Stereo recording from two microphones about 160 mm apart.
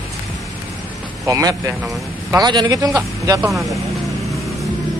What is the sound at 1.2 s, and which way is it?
A man's voice, 20° right (ahead or behind).